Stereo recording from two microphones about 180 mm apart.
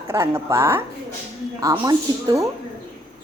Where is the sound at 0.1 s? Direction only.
15° right (ahead or behind).